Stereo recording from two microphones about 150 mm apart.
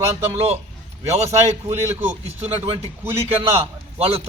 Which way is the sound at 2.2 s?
40° right (ahead or behind).